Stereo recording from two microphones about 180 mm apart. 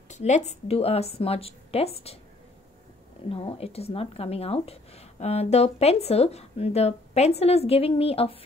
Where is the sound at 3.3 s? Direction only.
30° left (ahead or behind).